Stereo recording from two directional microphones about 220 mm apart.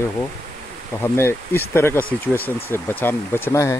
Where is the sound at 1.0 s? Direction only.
10° left (ahead or behind).